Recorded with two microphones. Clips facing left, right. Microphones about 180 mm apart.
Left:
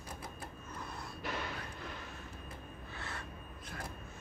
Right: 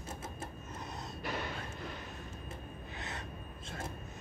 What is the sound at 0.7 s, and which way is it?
Vehicle, 20° right (ahead or behind).